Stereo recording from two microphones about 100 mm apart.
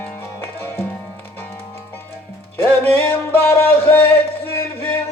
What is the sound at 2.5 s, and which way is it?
Music, 20° left (ahead or behind).